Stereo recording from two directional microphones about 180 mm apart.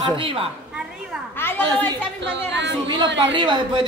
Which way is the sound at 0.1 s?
30° right (ahead or behind).